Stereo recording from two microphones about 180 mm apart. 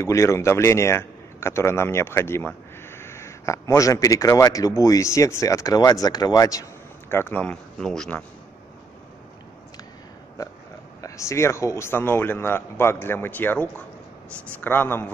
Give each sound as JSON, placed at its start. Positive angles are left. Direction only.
{"t": 0.0, "sound": "speech", "side_deg": 15}
{"t": 11.0, "sound": "speech", "side_deg": 15}